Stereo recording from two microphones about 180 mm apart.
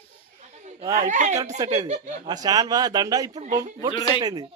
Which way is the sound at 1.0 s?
40° right (ahead or behind).